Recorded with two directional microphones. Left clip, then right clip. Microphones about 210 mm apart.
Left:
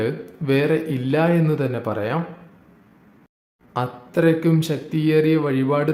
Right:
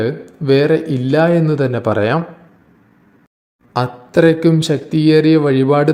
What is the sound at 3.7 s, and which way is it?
A man's voice, 25° right (ahead or behind).